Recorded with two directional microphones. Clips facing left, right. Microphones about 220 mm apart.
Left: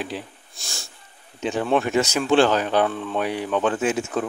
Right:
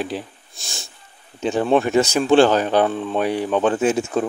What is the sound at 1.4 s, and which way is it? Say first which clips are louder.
Speech: right 4 dB; 35° right (ahead or behind).